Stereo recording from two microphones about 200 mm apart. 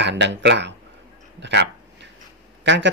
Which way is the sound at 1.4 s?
60° right (ahead or behind).